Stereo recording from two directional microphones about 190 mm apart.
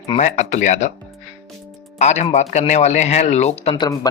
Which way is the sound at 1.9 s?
35° left (ahead or behind).